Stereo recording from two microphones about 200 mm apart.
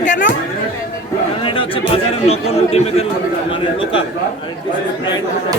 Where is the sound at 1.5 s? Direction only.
25° left (ahead or behind).